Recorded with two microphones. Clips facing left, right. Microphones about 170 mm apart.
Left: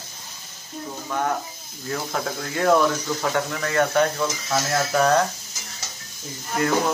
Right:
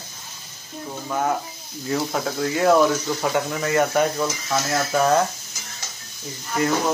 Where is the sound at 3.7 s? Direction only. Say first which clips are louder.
Even; 10° right (ahead or behind).